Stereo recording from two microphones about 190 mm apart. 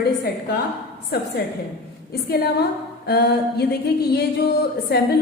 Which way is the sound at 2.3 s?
55° left (ahead or behind).